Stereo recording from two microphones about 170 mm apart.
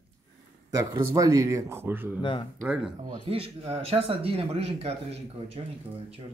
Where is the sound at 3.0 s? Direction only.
30° right (ahead or behind).